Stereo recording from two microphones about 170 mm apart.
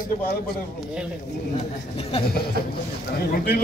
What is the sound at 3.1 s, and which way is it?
Speech, 65° left (ahead or behind).